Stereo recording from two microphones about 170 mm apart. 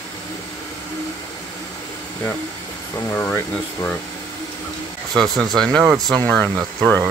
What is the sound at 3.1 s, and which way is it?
Speech, 10° left (ahead or behind).